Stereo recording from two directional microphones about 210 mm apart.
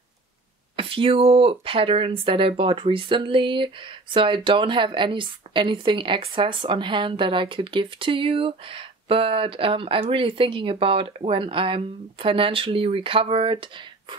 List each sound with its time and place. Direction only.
0.7 s speech: 25° right (ahead or behind)